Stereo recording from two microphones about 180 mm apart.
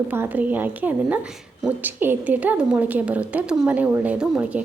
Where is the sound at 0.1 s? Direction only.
10° right (ahead or behind).